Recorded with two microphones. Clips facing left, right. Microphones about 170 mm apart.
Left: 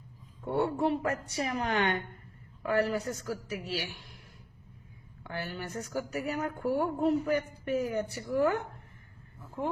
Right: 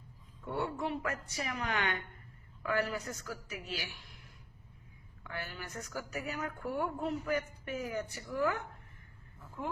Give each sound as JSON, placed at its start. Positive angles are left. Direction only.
{"t": 0.4, "sound": "speech", "side_deg": 30}
{"t": 5.2, "sound": "speech", "side_deg": 30}